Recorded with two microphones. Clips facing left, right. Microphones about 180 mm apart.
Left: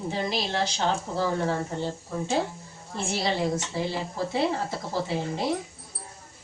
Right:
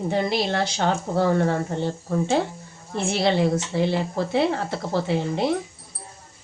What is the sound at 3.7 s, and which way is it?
Speech, 65° right (ahead or behind).